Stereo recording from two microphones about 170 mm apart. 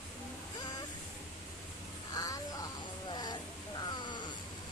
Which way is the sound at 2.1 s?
20° left (ahead or behind).